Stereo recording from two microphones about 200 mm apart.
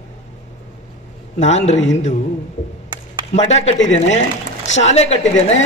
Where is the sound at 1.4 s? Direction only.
35° left (ahead or behind).